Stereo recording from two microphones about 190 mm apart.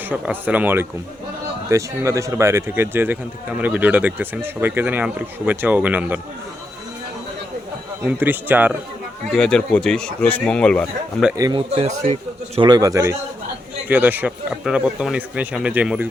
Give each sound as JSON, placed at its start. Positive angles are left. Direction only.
{"t": 0.1, "sound": "speech", "side_deg": -10}
{"t": 8.0, "sound": "speech", "side_deg": -10}
{"t": 9.3, "sound": "speech", "side_deg": 5}
{"t": 11.3, "sound": "a man's voice", "side_deg": -20}
{"t": 11.7, "sound": "a man's voice", "side_deg": -35}